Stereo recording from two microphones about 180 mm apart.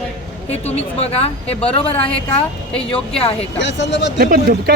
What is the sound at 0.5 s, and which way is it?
Speech, 35° left (ahead or behind).